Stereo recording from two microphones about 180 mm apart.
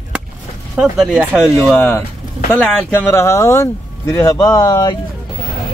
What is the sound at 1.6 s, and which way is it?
Speech, 10° left (ahead or behind).